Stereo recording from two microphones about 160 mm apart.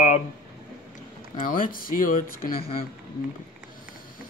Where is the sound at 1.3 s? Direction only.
60° left (ahead or behind).